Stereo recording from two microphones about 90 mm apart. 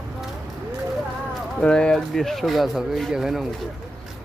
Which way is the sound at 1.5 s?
10° left (ahead or behind).